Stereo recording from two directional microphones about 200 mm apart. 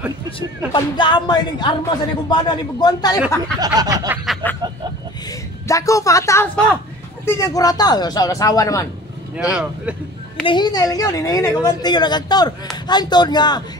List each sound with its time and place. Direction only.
0.7 s a woman's voice: 25° left (ahead or behind)
3.5 s a sound: 20° right (ahead or behind)
4.3 s speech: 10° left (ahead or behind)
5.7 s speech: 15° left (ahead or behind)
9.4 s speech: 5° right (ahead or behind)
10.4 s a woman's voice: 20° left (ahead or behind)